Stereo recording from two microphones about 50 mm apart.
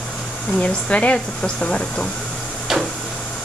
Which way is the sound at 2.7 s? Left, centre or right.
Centre.